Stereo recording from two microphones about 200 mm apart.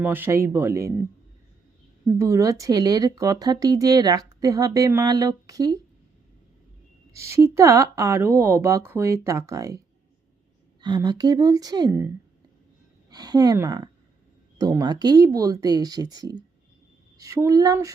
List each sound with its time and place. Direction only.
0.0 s speech: 10° right (ahead or behind)
2.0 s speech: 15° right (ahead or behind)
7.1 s speech: 15° right (ahead or behind)